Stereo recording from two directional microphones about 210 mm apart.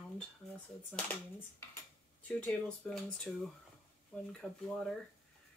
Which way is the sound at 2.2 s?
5° left (ahead or behind).